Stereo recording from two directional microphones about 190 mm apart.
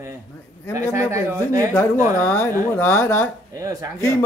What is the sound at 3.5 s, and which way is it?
Speech, 15° right (ahead or behind).